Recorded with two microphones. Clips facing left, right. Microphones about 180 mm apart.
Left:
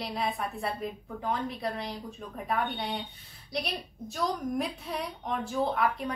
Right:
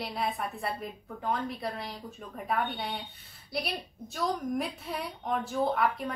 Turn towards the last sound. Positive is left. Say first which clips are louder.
# even
turn(degrees=0)  # may be behind; listen again after turning